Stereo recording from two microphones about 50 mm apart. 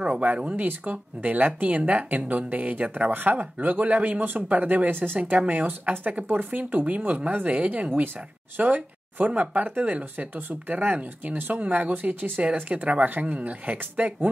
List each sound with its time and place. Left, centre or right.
0.5 s a woman's voice: right
4.2 s a woman's voice: right